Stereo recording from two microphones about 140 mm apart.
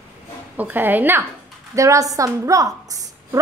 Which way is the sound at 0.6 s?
15° right (ahead or behind).